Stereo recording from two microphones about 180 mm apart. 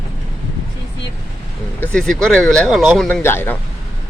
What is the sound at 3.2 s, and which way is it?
Speech, 15° left (ahead or behind).